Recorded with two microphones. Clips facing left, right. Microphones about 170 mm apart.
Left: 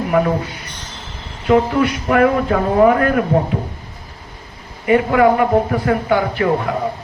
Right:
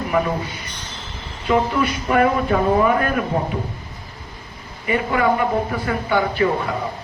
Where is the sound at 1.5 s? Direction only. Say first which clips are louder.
Left 5 dB; 70° left (ahead or behind).